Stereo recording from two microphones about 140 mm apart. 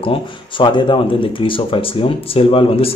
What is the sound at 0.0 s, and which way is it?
A man's voice, 35° left (ahead or behind).